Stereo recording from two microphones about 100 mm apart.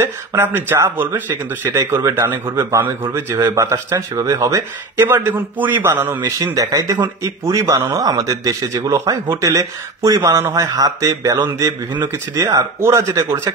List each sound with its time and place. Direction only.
0.0 s speech: 25° right (ahead or behind)
6.2 s speech: 35° right (ahead or behind)